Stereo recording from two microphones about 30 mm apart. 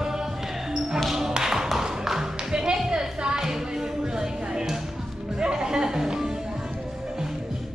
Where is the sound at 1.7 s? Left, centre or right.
Centre.